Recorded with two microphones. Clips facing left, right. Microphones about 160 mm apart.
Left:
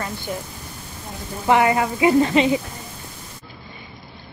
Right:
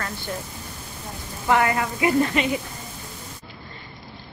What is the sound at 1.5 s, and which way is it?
A woman's voice, 20° left (ahead or behind).